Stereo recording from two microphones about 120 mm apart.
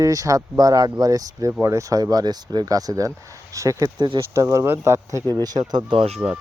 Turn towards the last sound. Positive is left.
turn(degrees=-45)  # may be behind; listen again after turning